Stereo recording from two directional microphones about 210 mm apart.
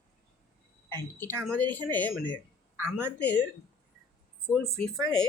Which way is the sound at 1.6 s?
20° right (ahead or behind).